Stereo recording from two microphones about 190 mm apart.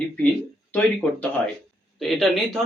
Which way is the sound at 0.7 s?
10° left (ahead or behind).